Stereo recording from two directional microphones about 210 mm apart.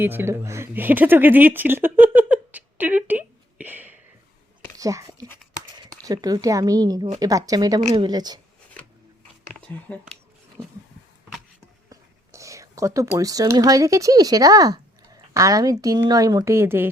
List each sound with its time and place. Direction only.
0.0 s speech: 10° right (ahead or behind)
7.8 s a woman's voice: 30° right (ahead or behind)
9.6 s a sound: 5° left (ahead or behind)
11.9 s speech: 15° right (ahead or behind)